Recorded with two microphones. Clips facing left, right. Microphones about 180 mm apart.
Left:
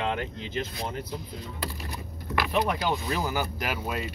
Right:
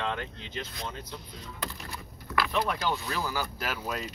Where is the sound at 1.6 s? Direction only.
15° left (ahead or behind).